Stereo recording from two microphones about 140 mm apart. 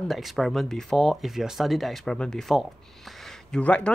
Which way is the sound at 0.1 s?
Centre (ahead or behind).